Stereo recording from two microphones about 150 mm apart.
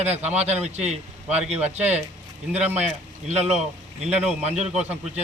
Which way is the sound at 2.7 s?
10° right (ahead or behind).